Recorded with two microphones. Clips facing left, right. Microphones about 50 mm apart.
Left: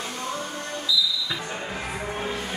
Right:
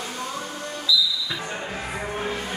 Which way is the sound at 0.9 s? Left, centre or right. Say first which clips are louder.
Right 3 dB; left.